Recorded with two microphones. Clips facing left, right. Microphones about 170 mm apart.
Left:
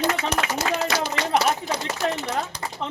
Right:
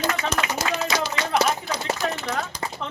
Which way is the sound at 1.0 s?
55° left (ahead or behind).